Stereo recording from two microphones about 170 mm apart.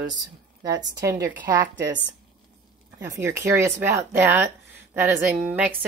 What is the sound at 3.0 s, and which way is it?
A woman's voice, 15° right (ahead or behind).